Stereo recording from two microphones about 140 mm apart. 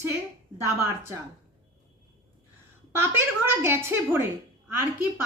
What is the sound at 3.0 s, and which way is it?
A woman's voice, 15° right (ahead or behind).